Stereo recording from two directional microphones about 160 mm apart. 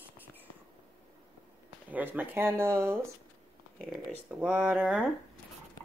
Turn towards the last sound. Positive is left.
turn(degrees=-5)  # may be behind; listen again after turning